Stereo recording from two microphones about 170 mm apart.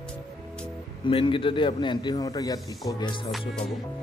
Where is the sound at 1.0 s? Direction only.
30° left (ahead or behind).